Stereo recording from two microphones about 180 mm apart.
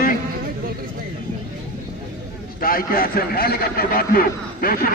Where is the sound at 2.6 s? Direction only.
55° left (ahead or behind).